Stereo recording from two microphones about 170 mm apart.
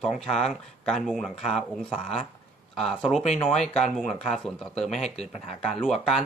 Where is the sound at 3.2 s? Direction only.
40° left (ahead or behind).